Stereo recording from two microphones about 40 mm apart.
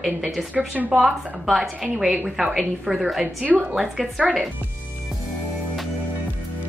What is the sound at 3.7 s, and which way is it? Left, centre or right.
Speech, centre.